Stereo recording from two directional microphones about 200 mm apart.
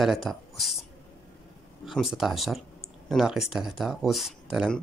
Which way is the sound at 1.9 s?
Centre (ahead or behind).